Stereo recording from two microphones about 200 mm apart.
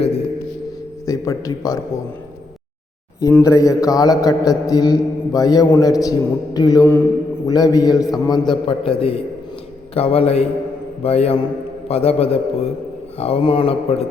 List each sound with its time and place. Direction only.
1.0 s a man's voice: 15° left (ahead or behind)
3.2 s a man's voice: 15° left (ahead or behind)